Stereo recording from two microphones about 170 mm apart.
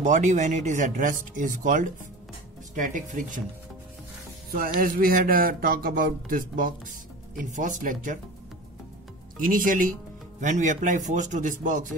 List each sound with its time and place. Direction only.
0.0 s speech: 45° right (ahead or behind)
4.5 s speech: 55° right (ahead or behind)
9.4 s speech: 50° right (ahead or behind)